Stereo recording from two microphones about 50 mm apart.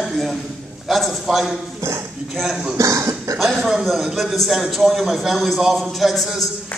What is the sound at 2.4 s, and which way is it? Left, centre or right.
Speech, centre.